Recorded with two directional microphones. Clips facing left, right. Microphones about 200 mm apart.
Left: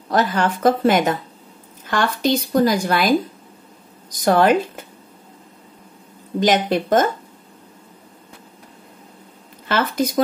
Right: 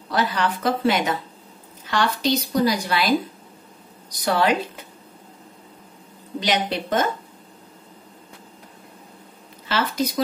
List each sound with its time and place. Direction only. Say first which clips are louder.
0.1 s speech: left 4 dB; 45° left (ahead or behind)
6.4 s speech: left 6 dB; 50° left (ahead or behind)
9.7 s speech: left 3 dB; 50° left (ahead or behind)